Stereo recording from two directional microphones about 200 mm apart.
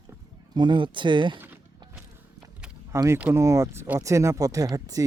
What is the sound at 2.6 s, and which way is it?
Speech, 15° right (ahead or behind).